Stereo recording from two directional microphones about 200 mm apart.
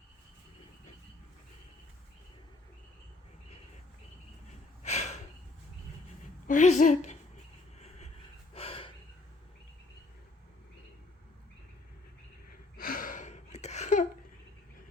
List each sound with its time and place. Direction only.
4.8 s a sound: 35° left (ahead or behind)
6.5 s a woman's voice: 35° left (ahead or behind)
7.8 s vehicle: 35° left (ahead or behind)
8.5 s gasp: 30° left (ahead or behind)
12.7 s gasp: 45° left (ahead or behind)